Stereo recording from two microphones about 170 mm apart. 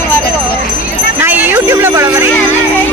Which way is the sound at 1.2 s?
10° right (ahead or behind).